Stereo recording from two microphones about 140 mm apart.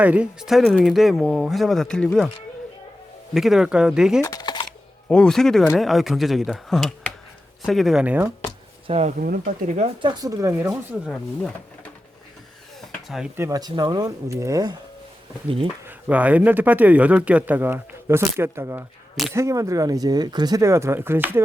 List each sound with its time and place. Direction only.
0.0 s speech: 10° right (ahead or behind)
3.3 s speech: centre (ahead or behind)
4.2 s typing: 25° left (ahead or behind)
5.0 s speech: 5° left (ahead or behind); by 8.3 s 10° right (ahead or behind)
8.9 s speech: 50° right (ahead or behind)
9.1 s speech: 90° right
9.7 s speech: 40° right (ahead or behind); by 10.7 s 20° right (ahead or behind)
10.7 s speech: centre (ahead or behind)
13.3 s speech: 20° right (ahead or behind)
15.4 s speech: 40° right (ahead or behind)
15.9 s a man's voice: 10° right (ahead or behind)